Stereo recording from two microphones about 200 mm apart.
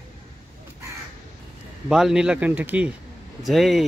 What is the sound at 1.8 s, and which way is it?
Speech, centre (ahead or behind).